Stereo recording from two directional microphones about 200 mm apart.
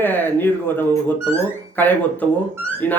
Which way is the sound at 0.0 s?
10° left (ahead or behind).